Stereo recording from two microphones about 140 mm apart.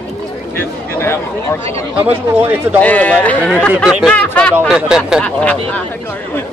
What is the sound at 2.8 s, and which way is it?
Speech, 10° left (ahead or behind).